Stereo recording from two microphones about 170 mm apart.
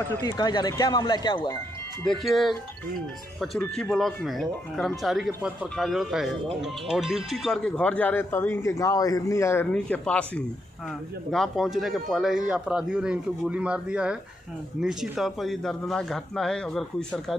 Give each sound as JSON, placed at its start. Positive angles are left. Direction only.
{"t": 0.4, "sound": "speech", "side_deg": 25}
{"t": 2.0, "sound": "speech", "side_deg": 0}